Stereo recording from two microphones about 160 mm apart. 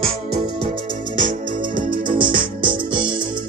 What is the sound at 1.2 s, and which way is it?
Music, 55° right (ahead or behind).